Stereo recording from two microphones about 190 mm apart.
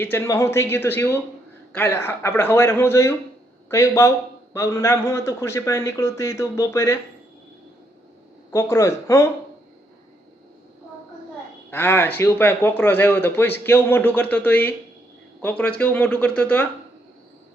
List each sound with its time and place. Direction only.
0.0 s speech: 10° left (ahead or behind)
8.4 s speech: 15° left (ahead or behind)
11.7 s speech: 10° left (ahead or behind)